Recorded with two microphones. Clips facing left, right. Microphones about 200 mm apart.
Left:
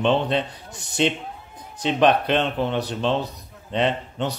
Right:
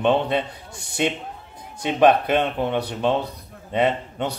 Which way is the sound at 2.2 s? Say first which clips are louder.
Right 1 dB; 10° right (ahead or behind).